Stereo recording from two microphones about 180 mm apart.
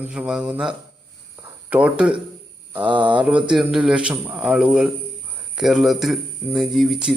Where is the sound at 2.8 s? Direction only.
25° right (ahead or behind).